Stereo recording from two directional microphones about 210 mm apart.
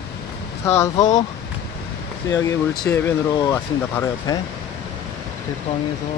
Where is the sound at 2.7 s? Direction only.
5° left (ahead or behind).